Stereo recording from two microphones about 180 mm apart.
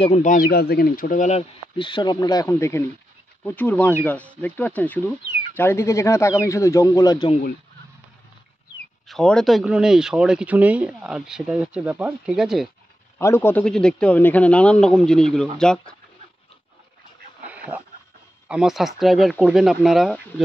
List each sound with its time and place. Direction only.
0.0 s speech: 40° left (ahead or behind)
1.8 s speech: 25° left (ahead or behind)
9.0 s speech: 5° left (ahead or behind)
13.2 s speech: 15° left (ahead or behind)
17.5 s dog: 10° right (ahead or behind)
18.5 s speech: 5° right (ahead or behind)